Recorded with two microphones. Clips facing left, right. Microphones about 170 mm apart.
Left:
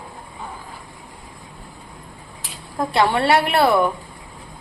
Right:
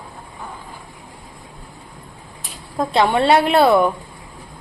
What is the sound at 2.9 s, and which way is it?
A woman's voice, 20° right (ahead or behind).